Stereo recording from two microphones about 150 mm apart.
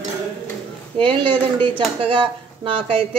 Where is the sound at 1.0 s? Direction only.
35° right (ahead or behind).